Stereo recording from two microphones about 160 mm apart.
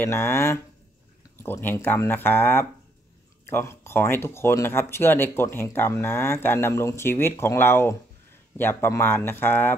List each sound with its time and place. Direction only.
0.0 s speech: 15° left (ahead or behind)